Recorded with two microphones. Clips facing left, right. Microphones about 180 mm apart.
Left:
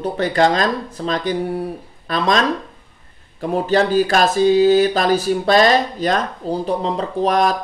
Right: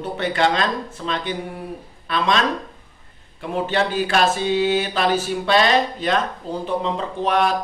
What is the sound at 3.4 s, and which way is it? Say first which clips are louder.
Speech: left 5 dB; 40° left (ahead or behind).